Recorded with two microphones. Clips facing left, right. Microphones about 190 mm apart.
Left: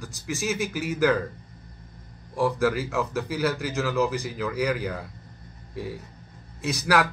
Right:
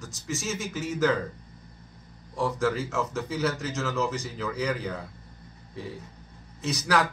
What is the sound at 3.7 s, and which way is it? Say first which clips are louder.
A man's voice: left 4 dB; 15° left (ahead or behind).